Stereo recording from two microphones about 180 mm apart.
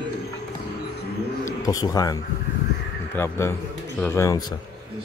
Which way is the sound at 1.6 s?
20° left (ahead or behind).